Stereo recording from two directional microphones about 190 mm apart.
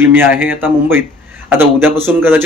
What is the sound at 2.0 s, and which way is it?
Speech, 10° right (ahead or behind).